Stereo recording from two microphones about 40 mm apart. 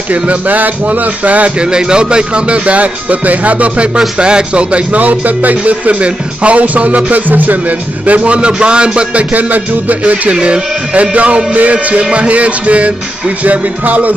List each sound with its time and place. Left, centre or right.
0.1 s speech: right
1.6 s speech: right
5.0 s speech: right
9.3 s speech: right
10.4 s speech: right